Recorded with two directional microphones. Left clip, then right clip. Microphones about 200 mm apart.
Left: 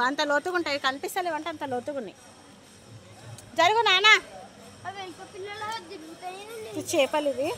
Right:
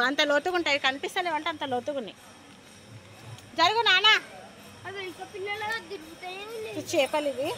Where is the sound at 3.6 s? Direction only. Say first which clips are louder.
Left 1 dB; 15° left (ahead or behind).